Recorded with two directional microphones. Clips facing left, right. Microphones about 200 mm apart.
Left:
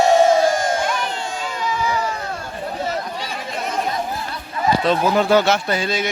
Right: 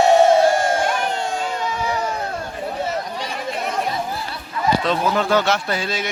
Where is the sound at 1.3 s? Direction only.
55° right (ahead or behind).